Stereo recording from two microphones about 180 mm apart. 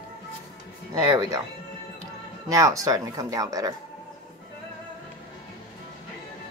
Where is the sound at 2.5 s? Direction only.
20° right (ahead or behind).